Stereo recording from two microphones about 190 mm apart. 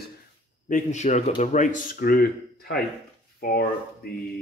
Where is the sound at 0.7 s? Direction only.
40° left (ahead or behind).